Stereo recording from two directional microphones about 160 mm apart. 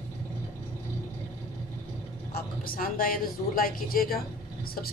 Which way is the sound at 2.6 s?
65° left (ahead or behind).